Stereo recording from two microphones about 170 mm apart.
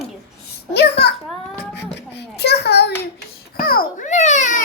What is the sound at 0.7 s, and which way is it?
A child's voice, 75° left (ahead or behind).